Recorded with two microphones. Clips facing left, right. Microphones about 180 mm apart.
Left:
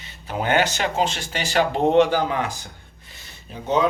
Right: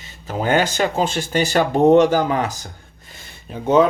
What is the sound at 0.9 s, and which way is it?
Speech, 45° right (ahead or behind).